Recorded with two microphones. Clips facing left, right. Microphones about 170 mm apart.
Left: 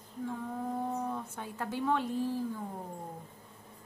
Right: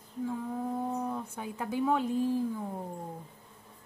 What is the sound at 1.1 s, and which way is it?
Speech, 15° right (ahead or behind).